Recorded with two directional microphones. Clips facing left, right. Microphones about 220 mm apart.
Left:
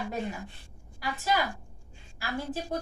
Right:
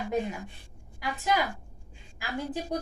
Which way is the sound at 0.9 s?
15° right (ahead or behind).